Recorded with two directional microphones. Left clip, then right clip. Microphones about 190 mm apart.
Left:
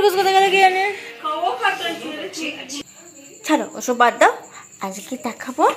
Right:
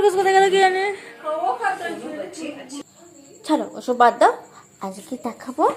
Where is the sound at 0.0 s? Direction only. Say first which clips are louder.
Left 1 dB; 15° right (ahead or behind).